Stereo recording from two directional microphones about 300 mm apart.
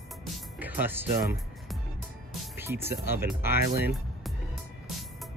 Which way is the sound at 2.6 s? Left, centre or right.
Centre.